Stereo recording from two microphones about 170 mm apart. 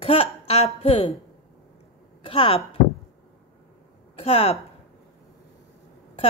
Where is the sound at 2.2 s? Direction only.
30° left (ahead or behind).